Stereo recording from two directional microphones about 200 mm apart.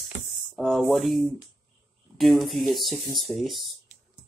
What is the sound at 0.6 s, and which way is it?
Speech, centre (ahead or behind).